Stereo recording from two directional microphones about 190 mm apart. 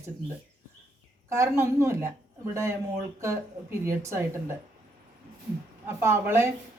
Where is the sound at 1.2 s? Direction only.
15° right (ahead or behind).